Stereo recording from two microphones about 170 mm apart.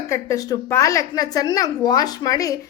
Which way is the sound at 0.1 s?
20° left (ahead or behind).